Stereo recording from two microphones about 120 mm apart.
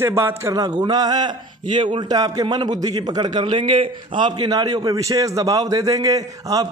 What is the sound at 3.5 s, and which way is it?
A man's voice, 50° right (ahead or behind).